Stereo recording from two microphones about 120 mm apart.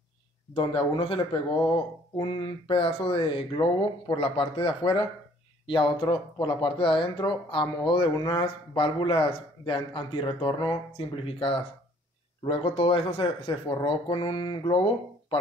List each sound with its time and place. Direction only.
0.6 s speech: 45° left (ahead or behind)